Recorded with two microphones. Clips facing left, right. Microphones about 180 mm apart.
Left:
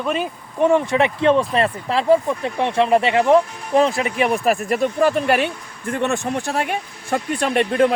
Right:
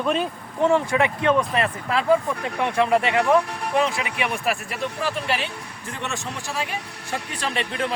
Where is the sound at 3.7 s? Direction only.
40° left (ahead or behind); by 7.9 s 55° left (ahead or behind).